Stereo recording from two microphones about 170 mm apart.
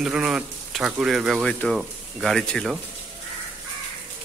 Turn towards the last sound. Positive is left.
turn(degrees=0)  # may be behind; listen again after turning